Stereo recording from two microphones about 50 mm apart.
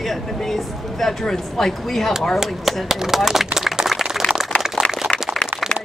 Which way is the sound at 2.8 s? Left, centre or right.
Centre.